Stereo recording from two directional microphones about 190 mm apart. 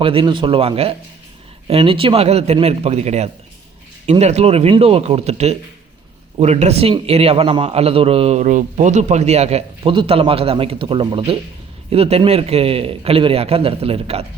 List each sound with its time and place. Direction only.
0.0 s a man's voice: 30° right (ahead or behind)